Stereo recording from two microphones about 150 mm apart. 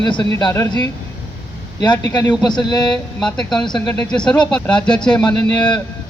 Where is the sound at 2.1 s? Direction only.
30° left (ahead or behind).